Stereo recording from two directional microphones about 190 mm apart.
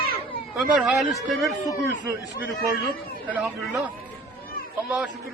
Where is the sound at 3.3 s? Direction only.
10° right (ahead or behind).